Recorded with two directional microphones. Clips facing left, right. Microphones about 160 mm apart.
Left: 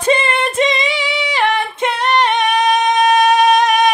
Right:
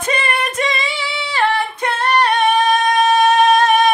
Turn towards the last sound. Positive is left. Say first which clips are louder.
# even
turn(degrees=15)  # may be behind; listen again after turning